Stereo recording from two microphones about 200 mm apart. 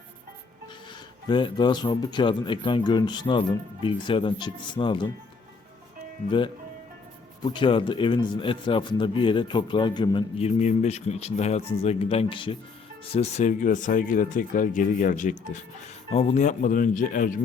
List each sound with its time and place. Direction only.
1.3 s a man's voice: 25° left (ahead or behind)
7.4 s a man's voice: 25° left (ahead or behind)
13.1 s speech: 35° left (ahead or behind)